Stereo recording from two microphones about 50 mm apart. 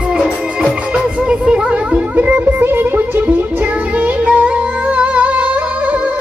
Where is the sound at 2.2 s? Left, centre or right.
Right.